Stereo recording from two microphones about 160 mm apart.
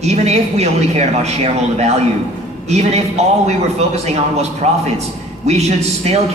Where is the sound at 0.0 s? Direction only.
45° right (ahead or behind).